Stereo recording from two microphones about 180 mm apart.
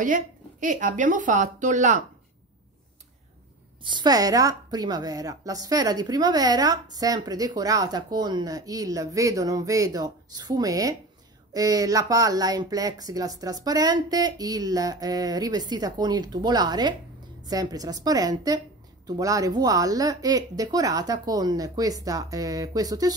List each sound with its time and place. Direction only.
0.0 s a woman's voice: 45° right (ahead or behind)
3.8 s a woman's voice: 25° right (ahead or behind)